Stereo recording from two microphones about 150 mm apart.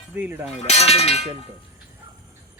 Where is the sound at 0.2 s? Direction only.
10° right (ahead or behind).